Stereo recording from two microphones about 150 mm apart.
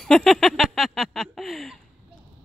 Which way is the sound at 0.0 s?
Centre (ahead or behind).